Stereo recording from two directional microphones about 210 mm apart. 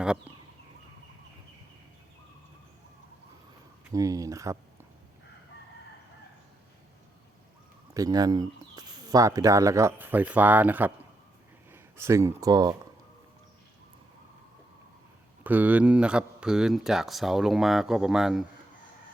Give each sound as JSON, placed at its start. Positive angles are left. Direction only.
{"t": 0.0, "sound": "speech", "side_deg": -5}
{"t": 3.9, "sound": "speech", "side_deg": -15}
{"t": 7.9, "sound": "speech", "side_deg": -15}
{"t": 15.4, "sound": "speech", "side_deg": -10}